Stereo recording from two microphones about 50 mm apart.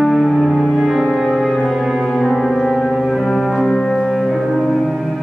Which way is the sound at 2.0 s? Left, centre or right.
Centre.